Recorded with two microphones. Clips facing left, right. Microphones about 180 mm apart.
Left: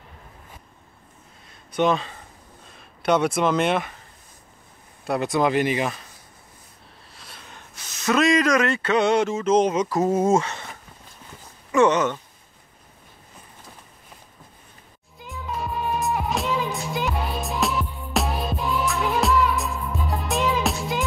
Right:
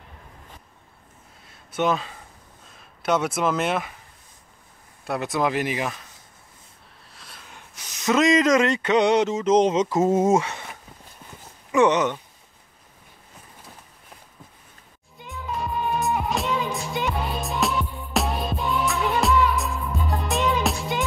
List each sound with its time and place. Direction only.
1.5 s speech: 5° right (ahead or behind)
5.0 s speech: centre (ahead or behind)
7.2 s a sound: centre (ahead or behind)
7.5 s a sound: 15° right (ahead or behind)
11.7 s speech: 15° right (ahead or behind)
15.1 s music: centre (ahead or behind)